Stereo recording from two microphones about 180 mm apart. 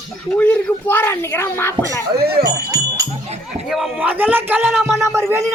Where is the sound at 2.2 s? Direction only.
60° right (ahead or behind).